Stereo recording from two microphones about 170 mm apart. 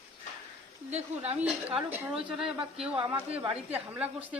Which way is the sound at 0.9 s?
40° right (ahead or behind).